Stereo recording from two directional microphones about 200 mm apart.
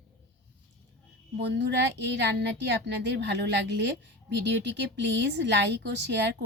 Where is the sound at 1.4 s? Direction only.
55° right (ahead or behind).